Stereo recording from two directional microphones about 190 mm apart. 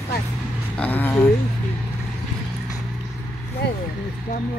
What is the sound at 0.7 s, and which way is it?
Speech, 10° left (ahead or behind).